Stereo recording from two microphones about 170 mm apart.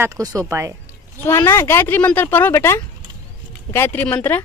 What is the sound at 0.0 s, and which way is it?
Speech, 20° right (ahead or behind).